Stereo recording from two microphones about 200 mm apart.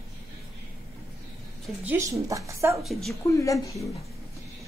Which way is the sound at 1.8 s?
15° right (ahead or behind).